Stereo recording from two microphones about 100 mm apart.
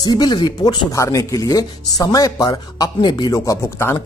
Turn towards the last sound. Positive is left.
turn(degrees=25)  # may be behind; listen again after turning